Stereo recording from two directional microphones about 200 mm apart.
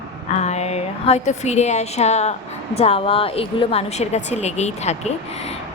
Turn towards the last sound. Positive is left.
turn(degrees=35)  # may be behind; listen again after turning